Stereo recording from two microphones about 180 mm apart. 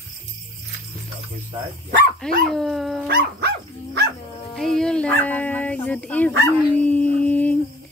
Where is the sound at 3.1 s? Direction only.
60° right (ahead or behind).